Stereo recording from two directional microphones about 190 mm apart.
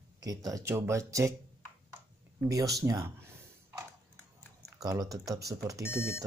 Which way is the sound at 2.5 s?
15° right (ahead or behind).